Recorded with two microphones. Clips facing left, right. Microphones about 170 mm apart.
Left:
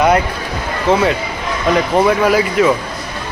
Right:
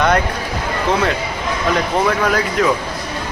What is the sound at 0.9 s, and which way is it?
Speech, 5° left (ahead or behind).